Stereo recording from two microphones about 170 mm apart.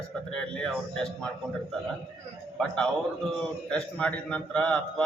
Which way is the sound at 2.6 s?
5° left (ahead or behind).